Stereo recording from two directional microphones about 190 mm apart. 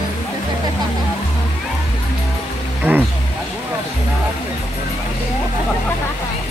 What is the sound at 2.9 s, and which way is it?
Speech, 10° right (ahead or behind).